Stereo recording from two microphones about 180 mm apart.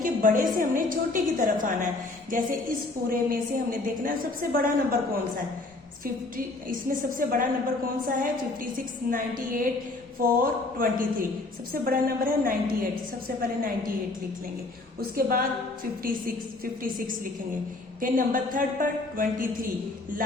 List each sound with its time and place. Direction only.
0.0 s music: 50° right (ahead or behind)
0.5 s a woman's voice: 50° right (ahead or behind)
6.3 s a woman's voice: 50° right (ahead or behind)
9.0 s a woman's voice: 50° right (ahead or behind)
15.1 s a woman's voice: 55° right (ahead or behind)
18.0 s a woman's voice: 50° right (ahead or behind)